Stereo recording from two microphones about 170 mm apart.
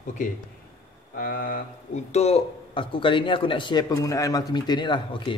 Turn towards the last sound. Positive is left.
turn(degrees=30)  # may be behind; listen again after turning